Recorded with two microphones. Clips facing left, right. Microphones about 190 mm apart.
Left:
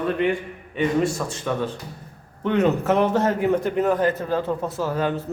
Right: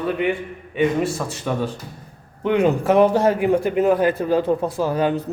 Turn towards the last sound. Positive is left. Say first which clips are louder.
# right 4 dB
turn(degrees=-15)  # may be behind; listen again after turning